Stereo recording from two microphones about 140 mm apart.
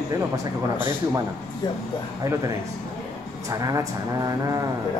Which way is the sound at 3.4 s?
25° right (ahead or behind).